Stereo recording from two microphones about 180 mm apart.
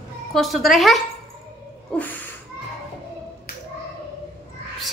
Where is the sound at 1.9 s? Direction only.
5° left (ahead or behind).